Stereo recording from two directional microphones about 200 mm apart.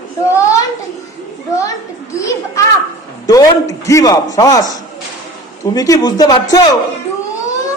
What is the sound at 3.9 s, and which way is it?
A man's voice, 15° left (ahead or behind).